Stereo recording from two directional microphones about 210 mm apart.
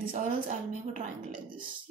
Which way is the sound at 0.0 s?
40° right (ahead or behind).